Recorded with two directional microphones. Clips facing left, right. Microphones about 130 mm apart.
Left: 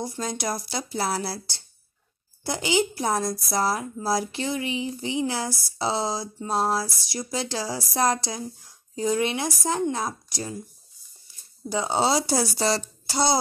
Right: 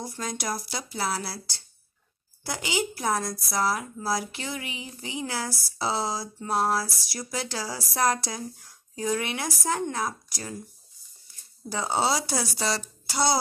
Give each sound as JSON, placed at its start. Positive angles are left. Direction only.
{"t": 0.0, "sound": "speech", "side_deg": 25}
{"t": 11.7, "sound": "speech", "side_deg": 20}